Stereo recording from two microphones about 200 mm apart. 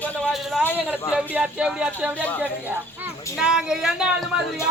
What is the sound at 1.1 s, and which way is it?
Speech, 5° right (ahead or behind).